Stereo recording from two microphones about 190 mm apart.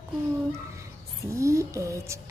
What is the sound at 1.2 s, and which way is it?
Speech, 15° right (ahead or behind).